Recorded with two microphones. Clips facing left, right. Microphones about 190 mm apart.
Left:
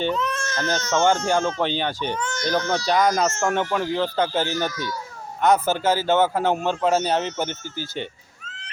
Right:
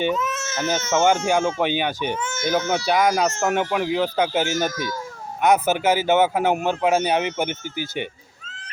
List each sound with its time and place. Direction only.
0.1 s a man's voice: centre (ahead or behind)
4.7 s a child's voice: 45° right (ahead or behind)
5.4 s a man's voice: 15° right (ahead or behind)